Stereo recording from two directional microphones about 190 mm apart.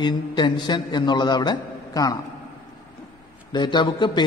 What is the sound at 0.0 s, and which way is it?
A man's voice, 25° left (ahead or behind).